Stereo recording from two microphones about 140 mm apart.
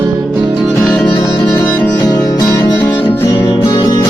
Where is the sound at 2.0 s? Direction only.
25° left (ahead or behind).